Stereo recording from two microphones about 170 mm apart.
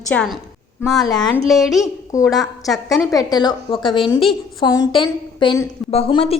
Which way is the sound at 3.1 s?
25° left (ahead or behind).